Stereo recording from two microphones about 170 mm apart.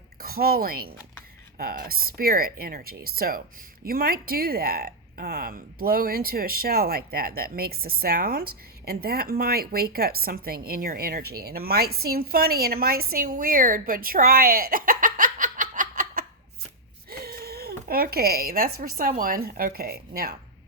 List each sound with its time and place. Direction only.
0.2 s a woman's voice: 60° right (ahead or behind)
17.1 s speech: 60° right (ahead or behind)